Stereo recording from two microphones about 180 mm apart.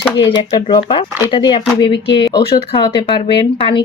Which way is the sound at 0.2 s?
25° left (ahead or behind).